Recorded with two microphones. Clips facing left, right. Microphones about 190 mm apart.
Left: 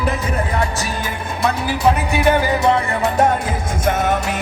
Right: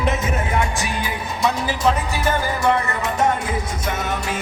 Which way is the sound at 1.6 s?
65° left (ahead or behind).